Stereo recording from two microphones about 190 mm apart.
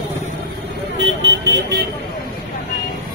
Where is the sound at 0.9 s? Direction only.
70° right (ahead or behind).